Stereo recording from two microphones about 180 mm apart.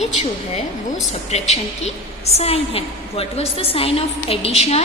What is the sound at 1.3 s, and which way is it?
A woman's voice, 35° left (ahead or behind).